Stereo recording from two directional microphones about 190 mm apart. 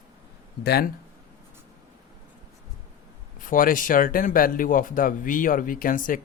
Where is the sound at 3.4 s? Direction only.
45° left (ahead or behind).